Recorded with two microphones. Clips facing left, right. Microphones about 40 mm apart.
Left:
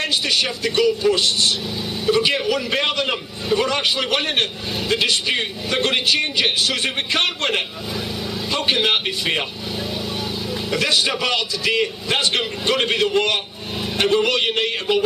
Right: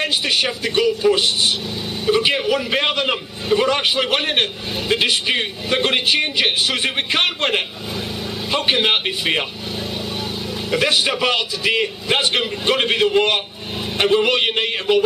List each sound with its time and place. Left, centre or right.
0.0 s a man's voice: centre
10.7 s a man's voice: centre